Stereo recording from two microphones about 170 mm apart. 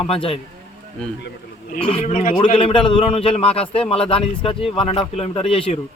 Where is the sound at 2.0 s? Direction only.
50° left (ahead or behind).